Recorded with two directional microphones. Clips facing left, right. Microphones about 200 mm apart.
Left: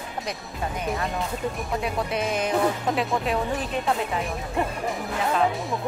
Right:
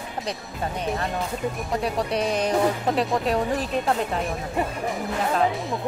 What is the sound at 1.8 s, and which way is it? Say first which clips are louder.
Speech: right 3 dB; 35° right (ahead or behind).